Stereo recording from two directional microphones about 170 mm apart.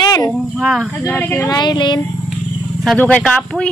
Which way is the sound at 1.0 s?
10° left (ahead or behind).